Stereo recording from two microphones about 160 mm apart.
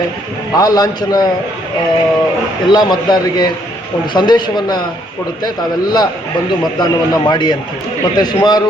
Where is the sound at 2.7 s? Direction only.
25° left (ahead or behind).